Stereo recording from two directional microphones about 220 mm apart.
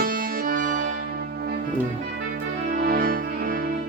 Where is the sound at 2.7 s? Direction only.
40° right (ahead or behind).